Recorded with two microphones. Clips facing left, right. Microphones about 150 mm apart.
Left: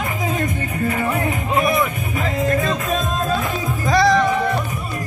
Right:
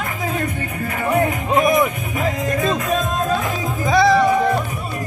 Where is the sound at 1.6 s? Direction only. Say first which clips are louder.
Right 3 dB; 20° right (ahead or behind).